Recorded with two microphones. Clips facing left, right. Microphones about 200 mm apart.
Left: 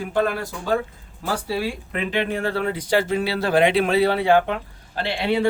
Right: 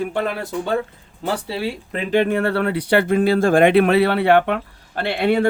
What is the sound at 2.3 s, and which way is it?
Speech, 65° right (ahead or behind).